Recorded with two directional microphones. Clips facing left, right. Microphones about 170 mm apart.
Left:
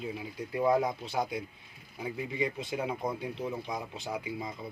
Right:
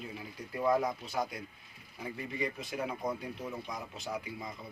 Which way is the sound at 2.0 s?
15° left (ahead or behind).